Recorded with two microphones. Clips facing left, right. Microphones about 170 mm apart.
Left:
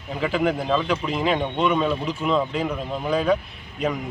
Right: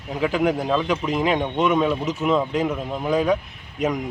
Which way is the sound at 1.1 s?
15° right (ahead or behind).